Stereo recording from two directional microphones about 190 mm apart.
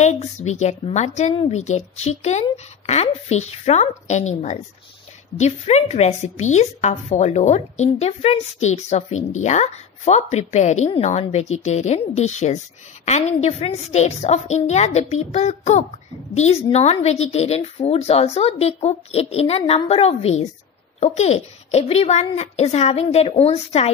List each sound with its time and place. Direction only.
0.0 s a woman's voice: 35° left (ahead or behind)